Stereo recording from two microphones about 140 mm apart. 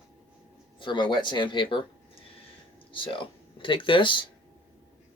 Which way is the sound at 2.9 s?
35° left (ahead or behind).